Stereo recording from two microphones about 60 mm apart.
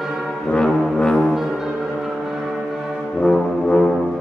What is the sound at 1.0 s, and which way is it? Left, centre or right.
Brass instrument, centre.